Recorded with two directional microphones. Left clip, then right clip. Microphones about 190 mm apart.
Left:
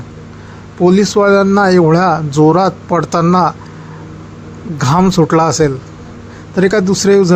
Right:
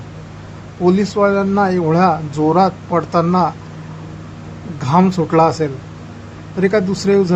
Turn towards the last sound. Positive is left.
turn(degrees=20)  # may be behind; listen again after turning